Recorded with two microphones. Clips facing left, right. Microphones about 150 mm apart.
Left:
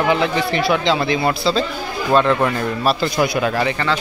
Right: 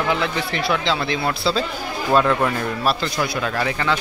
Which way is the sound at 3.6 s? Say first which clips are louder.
Left 2 dB; 5° right (ahead or behind).